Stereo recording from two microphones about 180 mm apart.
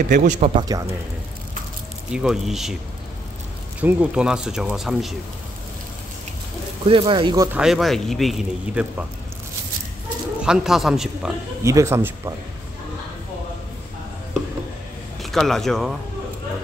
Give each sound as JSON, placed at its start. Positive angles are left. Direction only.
{"t": 0.1, "sound": "a man's voice", "side_deg": -45}
{"t": 0.6, "sound": "speech", "side_deg": -20}
{"t": 2.1, "sound": "speech", "side_deg": -5}
{"t": 3.8, "sound": "speech", "side_deg": -5}
{"t": 6.9, "sound": "speech", "side_deg": -30}
{"t": 7.5, "sound": "speech", "side_deg": 0}
{"t": 10.4, "sound": "speech", "side_deg": -5}
{"t": 11.6, "sound": "speech", "side_deg": -15}
{"t": 15.2, "sound": "speech", "side_deg": 0}